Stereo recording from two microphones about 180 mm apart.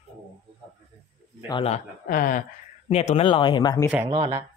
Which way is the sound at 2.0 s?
50° left (ahead or behind).